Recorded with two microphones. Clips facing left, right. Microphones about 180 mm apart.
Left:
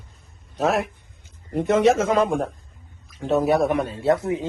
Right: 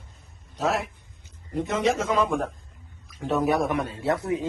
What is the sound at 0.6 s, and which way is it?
A man's voice, 60° left (ahead or behind).